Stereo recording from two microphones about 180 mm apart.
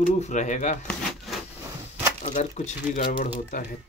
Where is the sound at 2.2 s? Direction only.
40° left (ahead or behind).